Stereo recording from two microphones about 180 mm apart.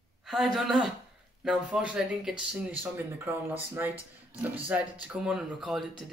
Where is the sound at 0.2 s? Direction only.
Centre (ahead or behind).